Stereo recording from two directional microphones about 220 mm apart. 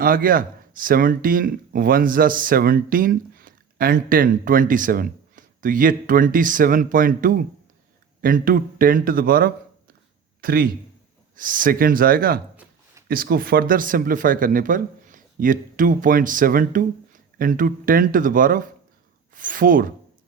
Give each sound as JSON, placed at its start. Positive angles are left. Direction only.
{"t": 0.0, "sound": "speech", "side_deg": -40}